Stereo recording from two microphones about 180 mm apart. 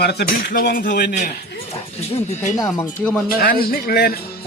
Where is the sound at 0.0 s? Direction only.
65° left (ahead or behind).